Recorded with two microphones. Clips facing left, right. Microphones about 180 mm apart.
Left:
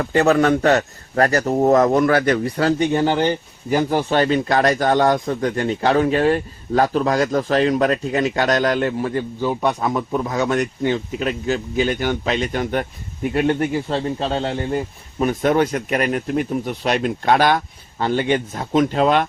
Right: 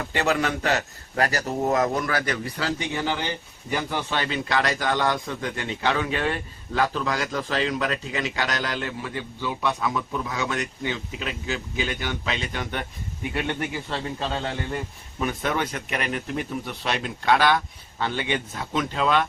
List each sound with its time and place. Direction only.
0.0 s a man's voice: 45° left (ahead or behind)